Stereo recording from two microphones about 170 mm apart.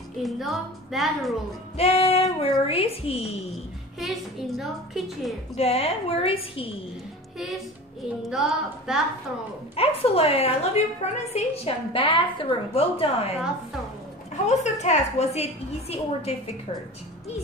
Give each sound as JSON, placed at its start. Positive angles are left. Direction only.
{"t": 0.2, "sound": "a woman's voice", "side_deg": 0}
{"t": 1.8, "sound": "a woman's voice", "side_deg": 35}
{"t": 4.0, "sound": "a woman's voice", "side_deg": 0}
{"t": 5.6, "sound": "a woman's voice", "side_deg": 35}
{"t": 8.2, "sound": "a woman's voice", "side_deg": 0}
{"t": 9.8, "sound": "a woman's voice", "side_deg": 35}
{"t": 14.3, "sound": "a woman's voice", "side_deg": 45}